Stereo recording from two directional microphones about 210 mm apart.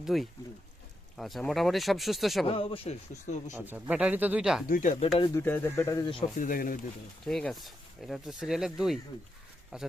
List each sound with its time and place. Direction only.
0.0 s speech: centre (ahead or behind)
2.5 s speech: 25° left (ahead or behind)
3.5 s speech: 5° right (ahead or behind)
4.7 s speech: 35° left (ahead or behind)
5.1 s speech: 20° left (ahead or behind)
6.4 s speech: 40° left (ahead or behind)
7.3 s speech: centre (ahead or behind)